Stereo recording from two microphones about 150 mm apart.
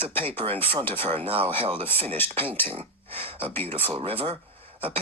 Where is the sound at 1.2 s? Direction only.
40° right (ahead or behind).